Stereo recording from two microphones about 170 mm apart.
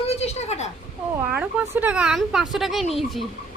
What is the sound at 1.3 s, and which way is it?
Speech, 10° right (ahead or behind).